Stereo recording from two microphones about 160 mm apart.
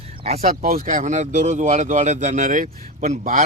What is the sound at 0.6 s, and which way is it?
Speech, 60° right (ahead or behind).